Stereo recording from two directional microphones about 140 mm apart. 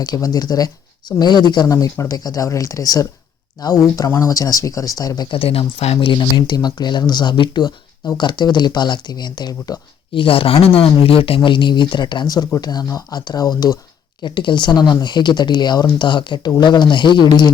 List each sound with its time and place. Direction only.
0.0 s speech: 30° left (ahead or behind)
10.2 s speech: 40° left (ahead or behind)